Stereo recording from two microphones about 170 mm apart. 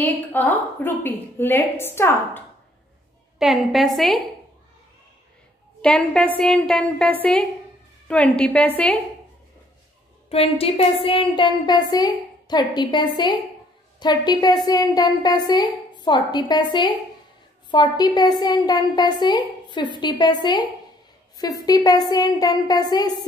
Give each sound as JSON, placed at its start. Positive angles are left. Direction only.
{"t": 0.0, "sound": "a woman's voice", "side_deg": 10}
{"t": 3.3, "sound": "a woman's voice", "side_deg": 0}
{"t": 5.8, "sound": "a woman's voice", "side_deg": 5}
{"t": 10.3, "sound": "a woman's voice", "side_deg": 35}
{"t": 21.6, "sound": "a woman's voice", "side_deg": 20}